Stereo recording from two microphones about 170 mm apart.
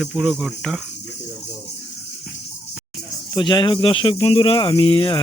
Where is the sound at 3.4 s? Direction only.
25° left (ahead or behind).